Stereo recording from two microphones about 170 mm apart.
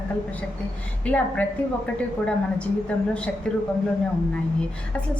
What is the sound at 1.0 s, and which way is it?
Speech, 10° left (ahead or behind).